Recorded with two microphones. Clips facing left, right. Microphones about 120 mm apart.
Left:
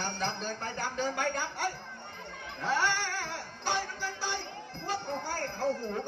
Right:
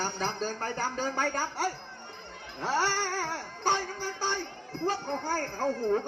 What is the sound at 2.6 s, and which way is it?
Speech, 30° right (ahead or behind).